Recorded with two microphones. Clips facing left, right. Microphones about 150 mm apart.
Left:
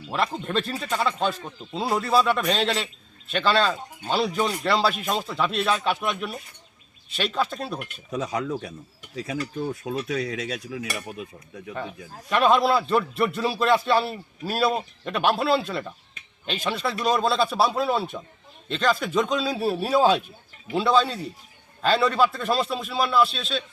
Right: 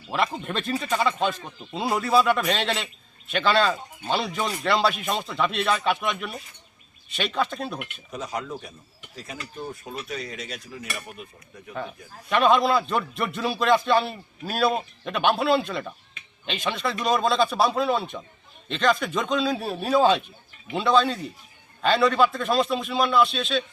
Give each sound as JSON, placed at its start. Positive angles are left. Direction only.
{"t": 0.1, "sound": "speech", "side_deg": 0}
{"t": 8.1, "sound": "speech", "side_deg": 85}
{"t": 10.1, "sound": "cutlery", "side_deg": 85}
{"t": 11.9, "sound": "a man's voice", "side_deg": 0}